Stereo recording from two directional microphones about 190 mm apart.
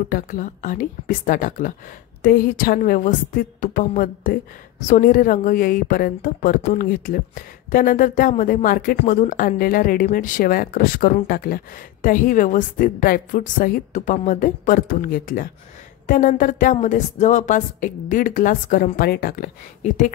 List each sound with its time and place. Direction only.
0.1 s a woman's voice: 45° left (ahead or behind)